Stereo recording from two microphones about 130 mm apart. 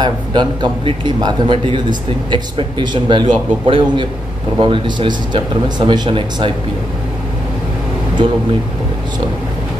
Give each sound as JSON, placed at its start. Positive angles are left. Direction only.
{"t": 0.0, "sound": "speech", "side_deg": -35}